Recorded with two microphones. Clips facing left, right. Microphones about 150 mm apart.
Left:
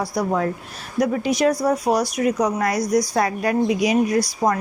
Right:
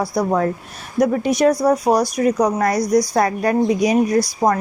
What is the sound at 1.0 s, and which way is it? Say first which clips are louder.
A woman's voice: right 3 dB; 40° right (ahead or behind).